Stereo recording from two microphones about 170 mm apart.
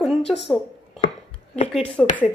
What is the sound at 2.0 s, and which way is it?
Music, 5° left (ahead or behind).